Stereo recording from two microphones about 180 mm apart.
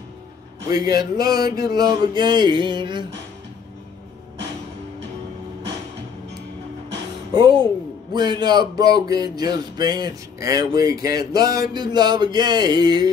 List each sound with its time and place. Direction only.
0.7 s speech: 20° right (ahead or behind)
1.4 s a sound: 55° left (ahead or behind)
1.8 s speech: 20° right (ahead or behind)
7.3 s speech: 25° right (ahead or behind)